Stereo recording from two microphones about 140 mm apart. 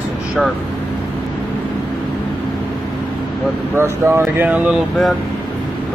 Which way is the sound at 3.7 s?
15° right (ahead or behind).